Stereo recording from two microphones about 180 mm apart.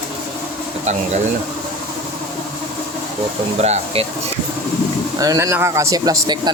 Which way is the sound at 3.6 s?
35° right (ahead or behind).